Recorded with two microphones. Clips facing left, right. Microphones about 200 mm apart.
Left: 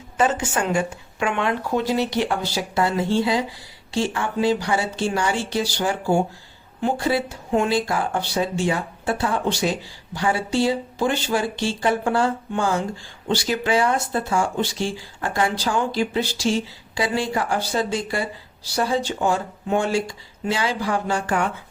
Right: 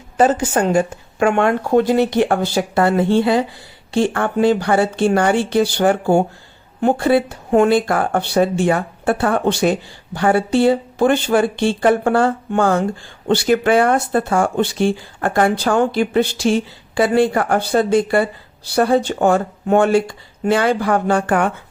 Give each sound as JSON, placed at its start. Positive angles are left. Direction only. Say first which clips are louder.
{"t": 0.2, "sound": "speech", "louder": "right 6 dB", "side_deg": -40}